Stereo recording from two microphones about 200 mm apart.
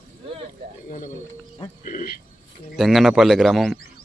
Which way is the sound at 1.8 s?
45° left (ahead or behind).